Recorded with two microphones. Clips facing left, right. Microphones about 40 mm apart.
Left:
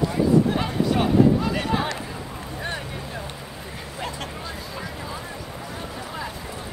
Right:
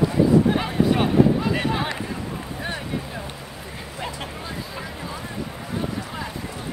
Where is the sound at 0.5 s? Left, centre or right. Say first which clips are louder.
Right 2 dB; centre.